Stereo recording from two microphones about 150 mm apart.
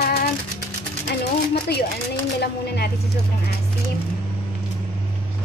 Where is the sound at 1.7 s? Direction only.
90° left.